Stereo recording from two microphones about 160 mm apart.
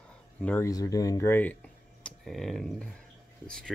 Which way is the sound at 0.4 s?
10° left (ahead or behind).